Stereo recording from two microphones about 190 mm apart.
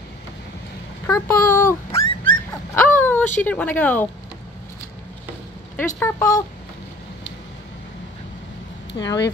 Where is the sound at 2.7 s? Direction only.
10° left (ahead or behind).